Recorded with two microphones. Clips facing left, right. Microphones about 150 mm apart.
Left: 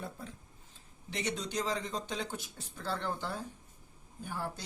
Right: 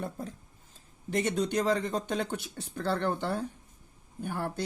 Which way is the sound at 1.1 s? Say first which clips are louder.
Right 8 dB; 50° right (ahead or behind).